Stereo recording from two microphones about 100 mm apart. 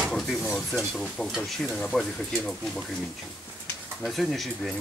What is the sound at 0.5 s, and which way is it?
Speech, centre (ahead or behind).